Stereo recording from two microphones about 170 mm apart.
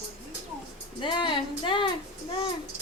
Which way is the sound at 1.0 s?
30° left (ahead or behind).